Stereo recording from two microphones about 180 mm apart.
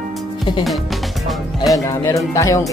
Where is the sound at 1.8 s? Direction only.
15° left (ahead or behind).